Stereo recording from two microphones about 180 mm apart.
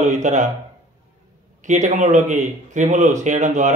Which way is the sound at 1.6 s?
45° right (ahead or behind).